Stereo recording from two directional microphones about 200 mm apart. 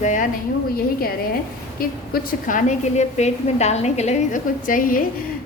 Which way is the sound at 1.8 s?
45° left (ahead or behind).